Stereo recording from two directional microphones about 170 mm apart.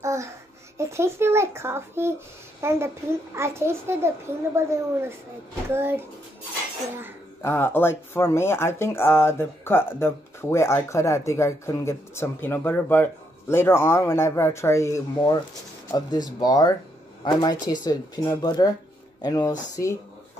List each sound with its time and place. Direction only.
0.0 s babbling: 15° right (ahead or behind)
0.7 s speech: 15° right (ahead or behind)
7.4 s speech: 15° left (ahead or behind)